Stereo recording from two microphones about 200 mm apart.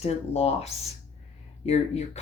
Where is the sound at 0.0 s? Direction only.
30° left (ahead or behind).